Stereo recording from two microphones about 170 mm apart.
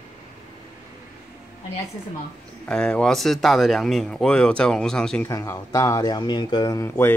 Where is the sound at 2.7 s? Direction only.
5° left (ahead or behind).